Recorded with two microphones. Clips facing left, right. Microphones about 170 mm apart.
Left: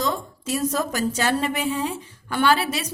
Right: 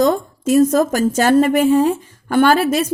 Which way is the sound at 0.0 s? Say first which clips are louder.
Right 11 dB; 50° right (ahead or behind).